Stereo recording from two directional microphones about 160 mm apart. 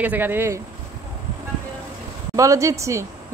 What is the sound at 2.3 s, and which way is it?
Speech, 20° right (ahead or behind).